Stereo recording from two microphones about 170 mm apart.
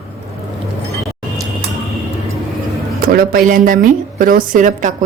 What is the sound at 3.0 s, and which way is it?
A woman's voice, 60° right (ahead or behind).